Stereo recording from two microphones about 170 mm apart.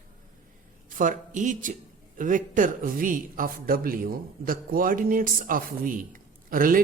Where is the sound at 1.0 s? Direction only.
50° right (ahead or behind).